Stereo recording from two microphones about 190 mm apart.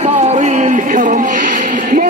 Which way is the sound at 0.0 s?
35° right (ahead or behind).